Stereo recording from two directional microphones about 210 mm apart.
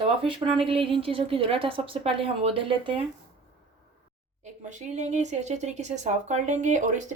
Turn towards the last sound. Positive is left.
turn(degrees=-35)  # may be behind; listen again after turning